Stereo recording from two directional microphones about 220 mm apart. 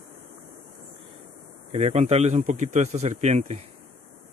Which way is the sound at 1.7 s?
30° right (ahead or behind).